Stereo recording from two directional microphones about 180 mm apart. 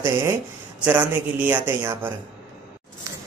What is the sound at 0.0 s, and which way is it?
Speech, 15° right (ahead or behind).